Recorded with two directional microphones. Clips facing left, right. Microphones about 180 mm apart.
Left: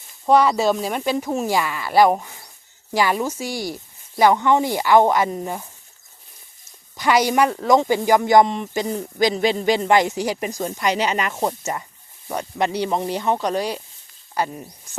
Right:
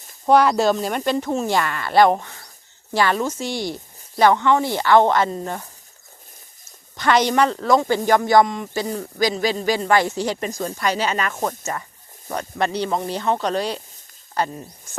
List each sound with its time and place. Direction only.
0.3 s speech: centre (ahead or behind)
6.9 s speech: 10° left (ahead or behind)